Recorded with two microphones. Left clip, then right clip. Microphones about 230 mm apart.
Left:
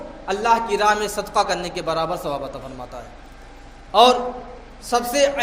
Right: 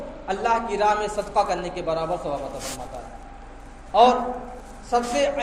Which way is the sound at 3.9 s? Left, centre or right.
Left.